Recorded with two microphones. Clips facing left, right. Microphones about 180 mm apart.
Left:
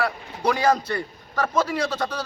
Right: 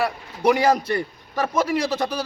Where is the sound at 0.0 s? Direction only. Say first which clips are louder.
Right 3 dB; 20° right (ahead or behind).